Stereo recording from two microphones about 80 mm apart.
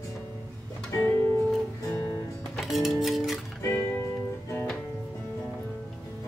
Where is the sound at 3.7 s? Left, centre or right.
Left.